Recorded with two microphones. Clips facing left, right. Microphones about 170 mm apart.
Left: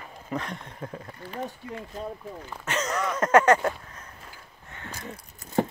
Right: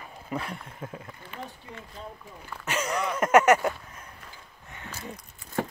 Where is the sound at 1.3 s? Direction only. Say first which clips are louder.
Left 9 dB; 40° left (ahead or behind).